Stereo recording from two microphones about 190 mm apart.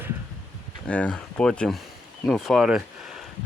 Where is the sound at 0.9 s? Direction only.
5° left (ahead or behind).